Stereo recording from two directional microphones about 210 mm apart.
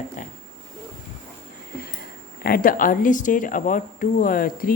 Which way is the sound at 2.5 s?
45° left (ahead or behind).